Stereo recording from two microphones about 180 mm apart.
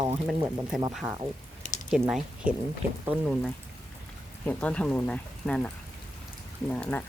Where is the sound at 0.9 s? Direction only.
5° right (ahead or behind).